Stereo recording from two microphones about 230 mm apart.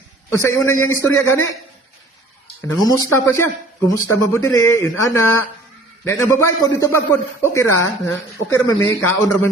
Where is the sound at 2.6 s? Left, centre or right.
Centre.